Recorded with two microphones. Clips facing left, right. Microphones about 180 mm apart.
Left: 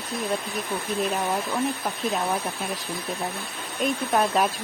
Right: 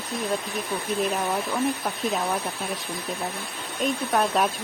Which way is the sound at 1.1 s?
Centre (ahead or behind).